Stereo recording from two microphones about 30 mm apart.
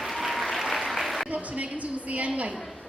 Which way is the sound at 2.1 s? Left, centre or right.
Right.